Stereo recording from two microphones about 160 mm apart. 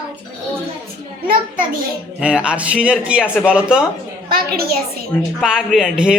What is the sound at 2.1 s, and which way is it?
Speech, 5° right (ahead or behind).